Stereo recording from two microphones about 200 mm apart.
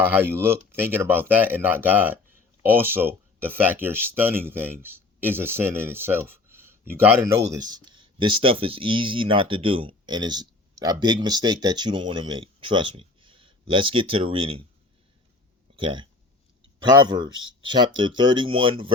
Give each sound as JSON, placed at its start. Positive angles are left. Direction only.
{"t": 0.1, "sound": "speech", "side_deg": -10}
{"t": 15.7, "sound": "speech", "side_deg": -25}